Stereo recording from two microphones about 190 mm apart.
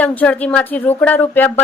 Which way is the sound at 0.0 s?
10° left (ahead or behind).